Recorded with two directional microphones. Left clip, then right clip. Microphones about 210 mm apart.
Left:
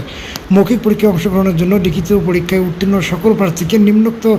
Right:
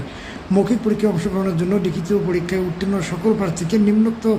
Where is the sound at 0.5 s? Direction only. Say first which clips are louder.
Left 6 dB; 10° left (ahead or behind).